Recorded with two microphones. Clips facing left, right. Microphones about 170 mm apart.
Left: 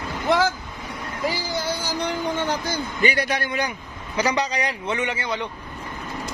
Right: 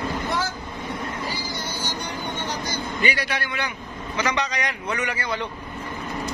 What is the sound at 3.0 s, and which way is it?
A man's voice, 45° left (ahead or behind).